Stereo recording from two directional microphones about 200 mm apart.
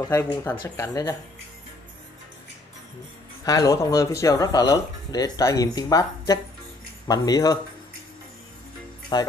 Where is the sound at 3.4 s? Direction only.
20° left (ahead or behind).